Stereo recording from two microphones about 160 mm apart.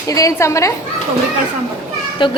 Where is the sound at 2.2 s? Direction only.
30° left (ahead or behind).